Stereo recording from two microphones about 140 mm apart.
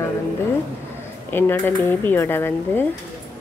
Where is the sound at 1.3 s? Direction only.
15° left (ahead or behind).